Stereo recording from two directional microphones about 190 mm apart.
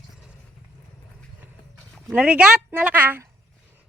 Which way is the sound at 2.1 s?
5° right (ahead or behind).